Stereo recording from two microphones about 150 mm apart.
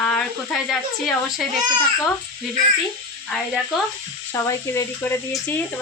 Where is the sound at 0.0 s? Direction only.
5° left (ahead or behind).